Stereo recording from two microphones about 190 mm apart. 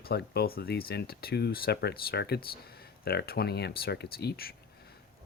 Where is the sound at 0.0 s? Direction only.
55° left (ahead or behind).